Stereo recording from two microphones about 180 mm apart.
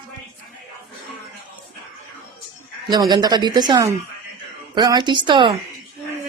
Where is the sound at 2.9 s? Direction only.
25° right (ahead or behind).